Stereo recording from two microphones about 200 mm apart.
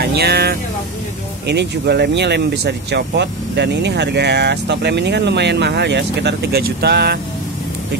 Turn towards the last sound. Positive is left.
turn(degrees=-55)  # may be behind; listen again after turning